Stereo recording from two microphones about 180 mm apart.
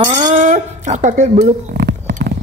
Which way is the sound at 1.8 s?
70° right (ahead or behind).